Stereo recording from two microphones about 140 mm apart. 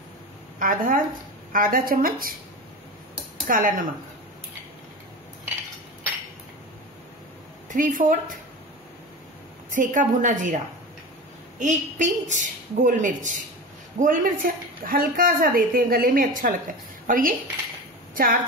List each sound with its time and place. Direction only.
0.6 s a woman's voice: 75° right (ahead or behind); by 2.3 s 90° right
3.4 s speech: 80° right
7.7 s speech: 70° right (ahead or behind)
9.8 s a woman's voice: 65° right (ahead or behind)
11.6 s a woman's voice: 60° right (ahead or behind); by 18.4 s 80° right